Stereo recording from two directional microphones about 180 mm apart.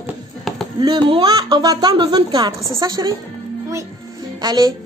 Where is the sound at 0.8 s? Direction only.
25° right (ahead or behind).